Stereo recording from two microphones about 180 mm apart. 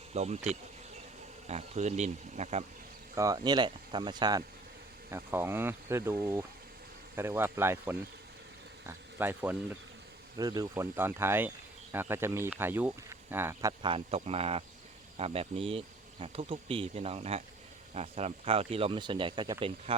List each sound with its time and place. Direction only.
0.1 s speech: 35° right (ahead or behind)
3.2 s speech: 20° right (ahead or behind)
10.3 s speech: 20° right (ahead or behind)